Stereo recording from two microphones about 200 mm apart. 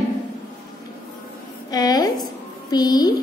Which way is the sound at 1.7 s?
20° left (ahead or behind).